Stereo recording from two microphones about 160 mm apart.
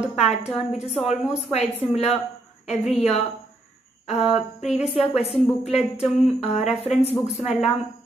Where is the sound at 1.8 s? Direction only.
40° left (ahead or behind).